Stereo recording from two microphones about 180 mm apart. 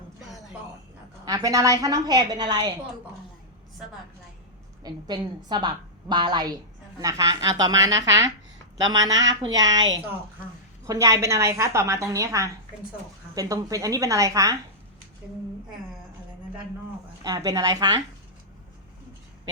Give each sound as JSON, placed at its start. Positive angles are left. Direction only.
{"t": 1.2, "sound": "a woman's voice", "side_deg": -20}
{"t": 4.8, "sound": "a woman's voice", "side_deg": -25}
{"t": 17.2, "sound": "a woman's voice", "side_deg": -20}